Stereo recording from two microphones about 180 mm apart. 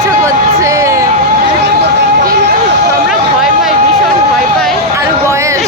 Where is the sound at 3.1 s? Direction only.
Centre (ahead or behind).